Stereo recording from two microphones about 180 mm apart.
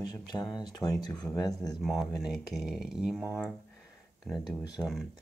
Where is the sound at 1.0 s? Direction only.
5° left (ahead or behind).